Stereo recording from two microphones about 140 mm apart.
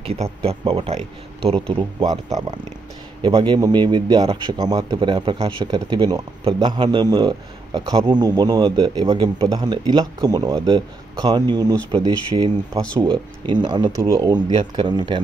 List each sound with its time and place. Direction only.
0.0 s speech: 45° right (ahead or behind)
2.2 s a man's voice: 25° right (ahead or behind)